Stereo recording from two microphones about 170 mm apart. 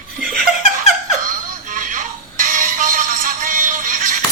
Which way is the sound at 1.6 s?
50° right (ahead or behind).